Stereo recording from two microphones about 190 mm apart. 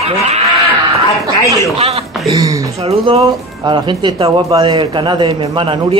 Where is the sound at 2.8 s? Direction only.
30° right (ahead or behind).